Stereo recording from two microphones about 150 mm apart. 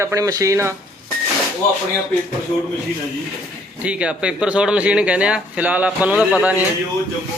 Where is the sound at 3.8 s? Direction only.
10° right (ahead or behind).